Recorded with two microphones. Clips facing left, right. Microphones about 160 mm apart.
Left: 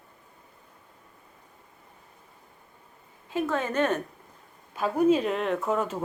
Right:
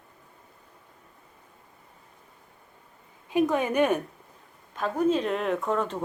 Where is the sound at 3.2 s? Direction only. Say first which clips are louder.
Right 4 dB; 15° right (ahead or behind).